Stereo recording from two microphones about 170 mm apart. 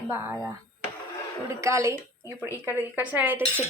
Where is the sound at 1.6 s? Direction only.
15° right (ahead or behind).